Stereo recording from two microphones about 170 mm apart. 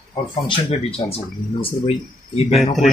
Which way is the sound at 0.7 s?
35° left (ahead or behind).